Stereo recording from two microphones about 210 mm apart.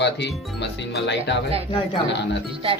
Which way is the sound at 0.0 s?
55° left (ahead or behind).